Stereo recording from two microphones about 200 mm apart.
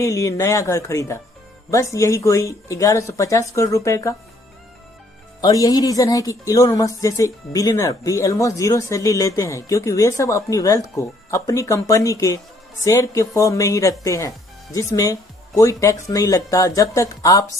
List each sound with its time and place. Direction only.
0.0 s speech: 15° left (ahead or behind)
5.4 s speech: 15° left (ahead or behind)